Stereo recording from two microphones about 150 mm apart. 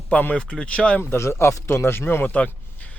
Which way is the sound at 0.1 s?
10° left (ahead or behind).